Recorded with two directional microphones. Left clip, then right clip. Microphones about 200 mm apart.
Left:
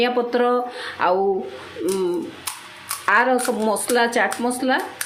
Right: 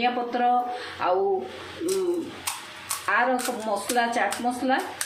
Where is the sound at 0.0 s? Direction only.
60° left (ahead or behind).